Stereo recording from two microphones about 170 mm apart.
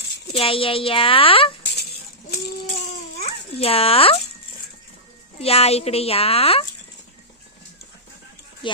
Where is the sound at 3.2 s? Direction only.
35° left (ahead or behind).